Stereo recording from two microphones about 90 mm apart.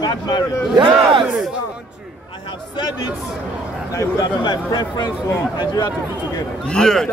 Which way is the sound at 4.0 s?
50° left (ahead or behind).